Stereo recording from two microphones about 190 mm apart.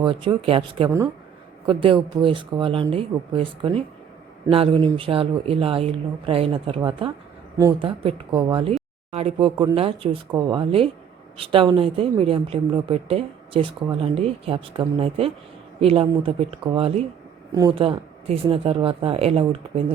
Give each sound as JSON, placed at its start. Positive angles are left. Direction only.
{"t": 0.0, "sound": "speech", "side_deg": -25}